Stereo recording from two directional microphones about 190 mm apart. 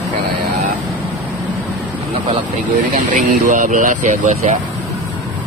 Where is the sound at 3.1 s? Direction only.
40° right (ahead or behind).